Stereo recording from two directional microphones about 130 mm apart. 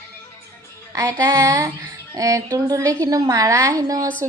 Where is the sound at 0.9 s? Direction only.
25° right (ahead or behind).